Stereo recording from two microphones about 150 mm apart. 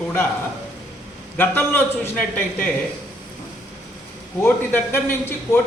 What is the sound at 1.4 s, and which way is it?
Speech, 15° left (ahead or behind).